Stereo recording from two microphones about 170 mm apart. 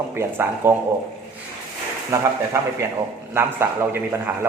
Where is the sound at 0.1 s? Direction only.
15° right (ahead or behind).